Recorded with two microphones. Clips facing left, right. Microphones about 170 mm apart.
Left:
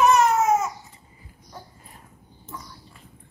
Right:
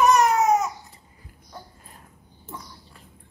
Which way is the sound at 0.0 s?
Centre (ahead or behind).